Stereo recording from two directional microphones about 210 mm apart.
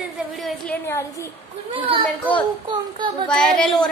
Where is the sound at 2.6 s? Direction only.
20° right (ahead or behind).